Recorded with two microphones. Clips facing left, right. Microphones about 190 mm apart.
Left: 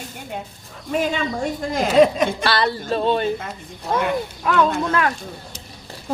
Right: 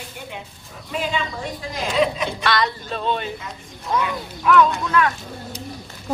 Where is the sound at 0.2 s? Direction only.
45° left (ahead or behind).